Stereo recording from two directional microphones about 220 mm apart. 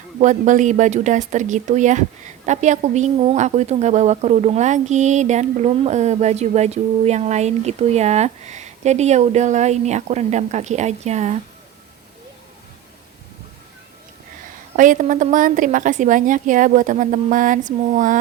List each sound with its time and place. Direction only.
0.2 s speech: 35° right (ahead or behind)
14.8 s speech: 35° right (ahead or behind)